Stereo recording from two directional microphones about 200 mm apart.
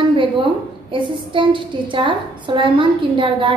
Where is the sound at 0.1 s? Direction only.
25° right (ahead or behind).